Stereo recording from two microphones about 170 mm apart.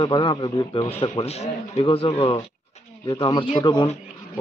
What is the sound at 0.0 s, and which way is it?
A man's voice, 25° left (ahead or behind).